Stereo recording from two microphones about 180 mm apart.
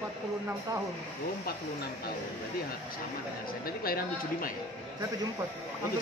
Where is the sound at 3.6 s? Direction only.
55° left (ahead or behind).